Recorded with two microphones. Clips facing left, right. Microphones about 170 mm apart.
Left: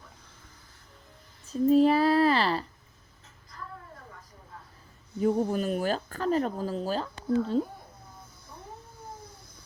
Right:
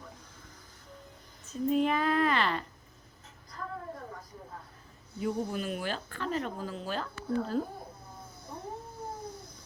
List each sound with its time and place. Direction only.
1.5 s speech: 35° left (ahead or behind)
5.2 s speech: 40° left (ahead or behind)